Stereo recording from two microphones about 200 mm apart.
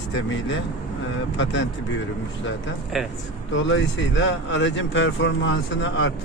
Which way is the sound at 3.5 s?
70° left (ahead or behind).